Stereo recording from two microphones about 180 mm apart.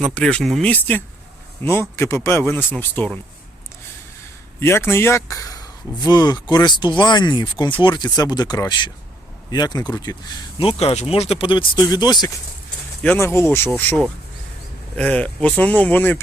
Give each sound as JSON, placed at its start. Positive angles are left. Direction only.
{"t": 0.0, "sound": "speech", "side_deg": 5}
{"t": 4.6, "sound": "speech", "side_deg": 15}
{"t": 13.0, "sound": "speech", "side_deg": 10}